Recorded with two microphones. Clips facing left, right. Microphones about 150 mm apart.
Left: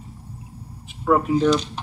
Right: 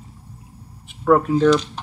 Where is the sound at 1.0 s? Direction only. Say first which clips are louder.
Right 3 dB; 5° left (ahead or behind).